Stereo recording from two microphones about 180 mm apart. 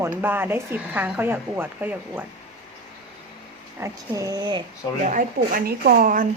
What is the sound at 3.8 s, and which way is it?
Speech, 20° right (ahead or behind).